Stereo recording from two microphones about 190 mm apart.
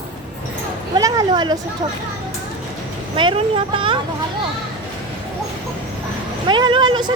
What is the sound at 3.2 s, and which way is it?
Speech, 25° right (ahead or behind).